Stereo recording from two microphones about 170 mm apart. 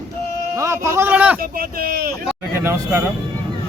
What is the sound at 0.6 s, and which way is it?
Speech, 15° right (ahead or behind).